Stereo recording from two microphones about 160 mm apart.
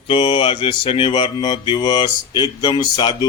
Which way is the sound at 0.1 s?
30° left (ahead or behind).